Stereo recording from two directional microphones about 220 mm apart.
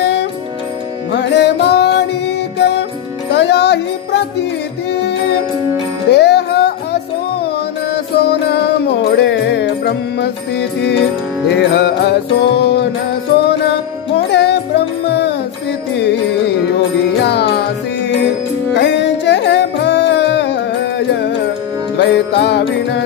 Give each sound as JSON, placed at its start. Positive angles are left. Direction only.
{"t": 0.0, "sound": "music", "side_deg": 50}
{"t": 6.0, "sound": "music", "side_deg": 50}
{"t": 17.2, "sound": "music", "side_deg": 50}
{"t": 18.7, "sound": "music", "side_deg": 55}